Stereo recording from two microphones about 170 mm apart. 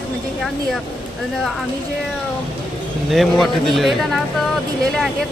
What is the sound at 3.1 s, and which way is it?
Speech, centre (ahead or behind).